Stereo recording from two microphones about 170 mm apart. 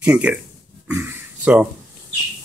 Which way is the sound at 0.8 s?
10° right (ahead or behind).